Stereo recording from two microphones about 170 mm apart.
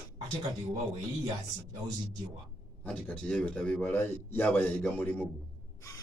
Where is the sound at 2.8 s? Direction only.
5° left (ahead or behind).